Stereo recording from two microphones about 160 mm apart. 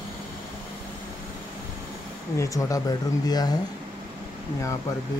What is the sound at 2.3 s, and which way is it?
Speech, 20° left (ahead or behind).